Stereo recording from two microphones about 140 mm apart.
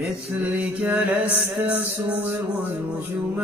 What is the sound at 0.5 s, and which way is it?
Mantra, 5° right (ahead or behind).